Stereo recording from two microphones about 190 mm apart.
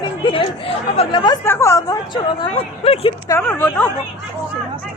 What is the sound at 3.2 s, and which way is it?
Speech, 10° left (ahead or behind).